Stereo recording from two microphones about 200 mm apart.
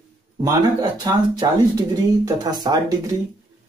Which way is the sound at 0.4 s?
20° right (ahead or behind).